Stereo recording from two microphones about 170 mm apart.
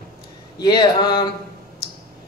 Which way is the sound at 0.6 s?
25° left (ahead or behind).